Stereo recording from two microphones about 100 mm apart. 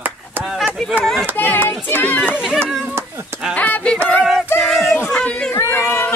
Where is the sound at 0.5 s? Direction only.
Centre (ahead or behind).